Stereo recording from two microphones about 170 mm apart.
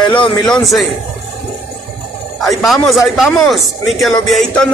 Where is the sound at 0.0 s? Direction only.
30° left (ahead or behind).